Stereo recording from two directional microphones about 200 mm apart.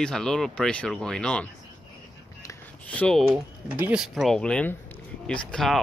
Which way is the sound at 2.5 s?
5° left (ahead or behind).